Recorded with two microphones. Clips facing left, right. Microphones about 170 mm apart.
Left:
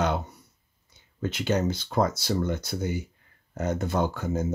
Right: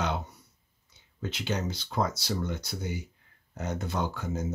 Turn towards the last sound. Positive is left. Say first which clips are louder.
# left 5 dB
turn(degrees=50)  # may be behind; listen again after turning